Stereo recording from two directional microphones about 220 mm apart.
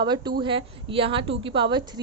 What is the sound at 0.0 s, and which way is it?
A woman's voice, 20° right (ahead or behind).